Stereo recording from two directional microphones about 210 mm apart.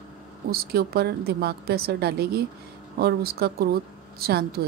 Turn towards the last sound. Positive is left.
turn(degrees=-45)  # may be behind; listen again after turning